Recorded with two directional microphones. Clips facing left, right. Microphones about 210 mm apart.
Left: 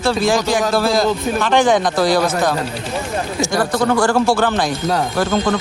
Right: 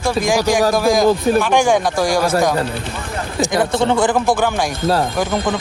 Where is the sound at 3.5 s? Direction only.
20° right (ahead or behind).